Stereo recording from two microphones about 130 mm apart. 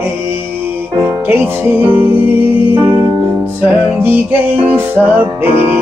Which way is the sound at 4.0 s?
15° right (ahead or behind).